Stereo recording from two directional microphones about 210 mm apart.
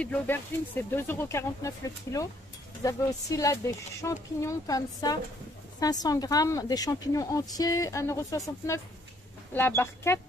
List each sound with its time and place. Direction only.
0.0 s speech: 10° left (ahead or behind)